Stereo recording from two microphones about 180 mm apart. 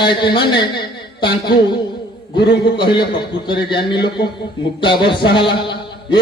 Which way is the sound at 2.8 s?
25° left (ahead or behind).